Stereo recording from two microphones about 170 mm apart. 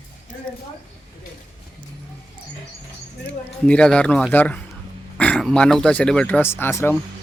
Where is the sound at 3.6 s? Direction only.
5° left (ahead or behind).